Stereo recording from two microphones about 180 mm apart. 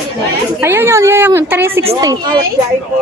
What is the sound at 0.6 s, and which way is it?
A woman's voice, 15° right (ahead or behind).